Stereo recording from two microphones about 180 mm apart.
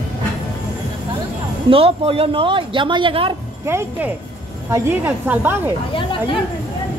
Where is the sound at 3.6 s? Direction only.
15° right (ahead or behind).